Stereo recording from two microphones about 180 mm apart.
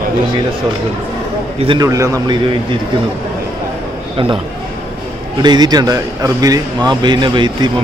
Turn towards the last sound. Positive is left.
turn(degrees=-25)  # may be behind; listen again after turning